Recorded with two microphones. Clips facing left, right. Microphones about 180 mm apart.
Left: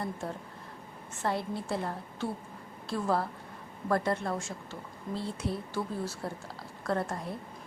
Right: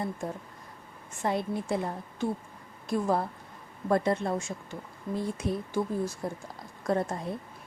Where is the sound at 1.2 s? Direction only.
20° right (ahead or behind).